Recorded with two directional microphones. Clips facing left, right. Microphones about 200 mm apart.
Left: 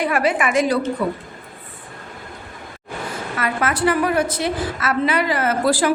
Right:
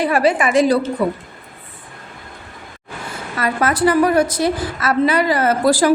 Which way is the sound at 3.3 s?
35° right (ahead or behind).